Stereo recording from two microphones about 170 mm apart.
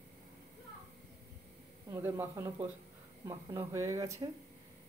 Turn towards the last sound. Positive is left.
turn(degrees=-20)  # may be behind; listen again after turning